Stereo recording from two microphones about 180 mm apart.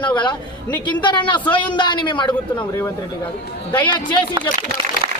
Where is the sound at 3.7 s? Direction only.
25° left (ahead or behind).